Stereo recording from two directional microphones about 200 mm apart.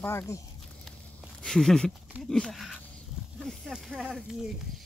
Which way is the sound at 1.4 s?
Centre (ahead or behind).